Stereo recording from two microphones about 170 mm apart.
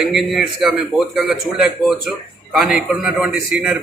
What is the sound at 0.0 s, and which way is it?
A man's voice, centre (ahead or behind).